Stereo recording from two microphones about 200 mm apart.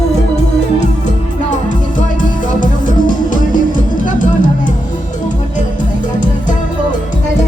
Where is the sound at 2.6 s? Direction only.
40° left (ahead or behind).